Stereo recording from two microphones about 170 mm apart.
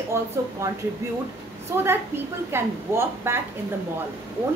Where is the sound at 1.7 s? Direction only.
15° right (ahead or behind).